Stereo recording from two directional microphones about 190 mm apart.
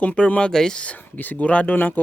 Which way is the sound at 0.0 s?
5° left (ahead or behind).